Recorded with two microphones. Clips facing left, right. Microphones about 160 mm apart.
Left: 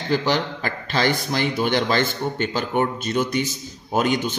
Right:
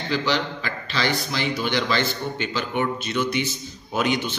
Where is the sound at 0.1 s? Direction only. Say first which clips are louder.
Left 3 dB; 50° left (ahead or behind).